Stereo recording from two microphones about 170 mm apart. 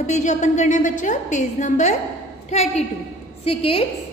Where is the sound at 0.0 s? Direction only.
45° left (ahead or behind).